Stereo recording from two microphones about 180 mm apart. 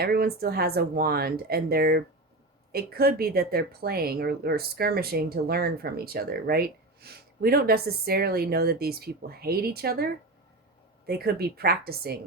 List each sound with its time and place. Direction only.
0.0 s speech: 60° right (ahead or behind)